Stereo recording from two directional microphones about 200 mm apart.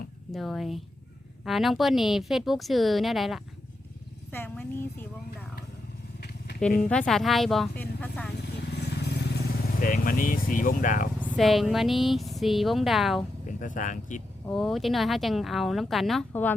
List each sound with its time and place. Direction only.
0.3 s a woman's voice: centre (ahead or behind)
6.1 s vehicle: 55° left (ahead or behind)
6.8 s speech: 5° left (ahead or behind)
8.4 s vehicle: 55° left (ahead or behind)
9.8 s speech: 45° left (ahead or behind)
11.3 s speech: centre (ahead or behind)
13.6 s speech: 40° left (ahead or behind)
14.4 s speech: centre (ahead or behind)